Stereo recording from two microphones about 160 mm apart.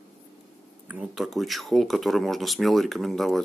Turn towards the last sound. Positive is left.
turn(degrees=0)  # may be behind; listen again after turning